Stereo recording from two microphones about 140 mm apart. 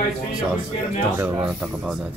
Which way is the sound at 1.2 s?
15° right (ahead or behind).